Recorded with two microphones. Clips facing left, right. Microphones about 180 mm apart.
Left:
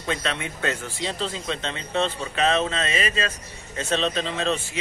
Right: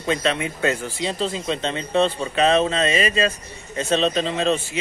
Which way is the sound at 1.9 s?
30° right (ahead or behind).